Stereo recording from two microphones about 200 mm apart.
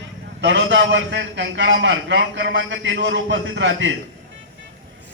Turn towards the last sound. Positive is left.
turn(degrees=-70)  # may be behind; listen again after turning